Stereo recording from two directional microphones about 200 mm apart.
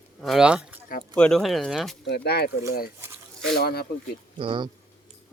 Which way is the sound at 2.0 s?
55° left (ahead or behind).